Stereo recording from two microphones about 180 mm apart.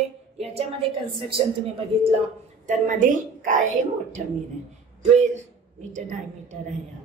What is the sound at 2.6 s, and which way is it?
A woman's voice, 45° right (ahead or behind).